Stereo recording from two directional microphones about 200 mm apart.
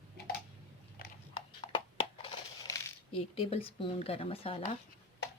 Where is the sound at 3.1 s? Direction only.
30° left (ahead or behind).